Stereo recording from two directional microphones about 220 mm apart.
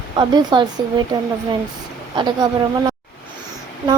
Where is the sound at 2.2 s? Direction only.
20° right (ahead or behind).